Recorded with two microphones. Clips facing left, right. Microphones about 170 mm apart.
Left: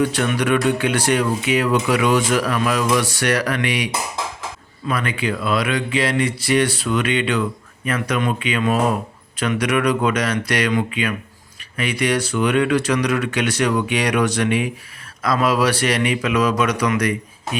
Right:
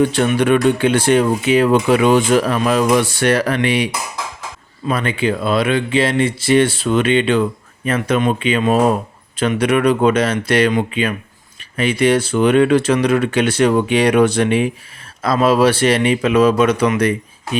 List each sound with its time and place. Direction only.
0.0 s speech: 25° right (ahead or behind)
4.9 s speech: 25° right (ahead or behind)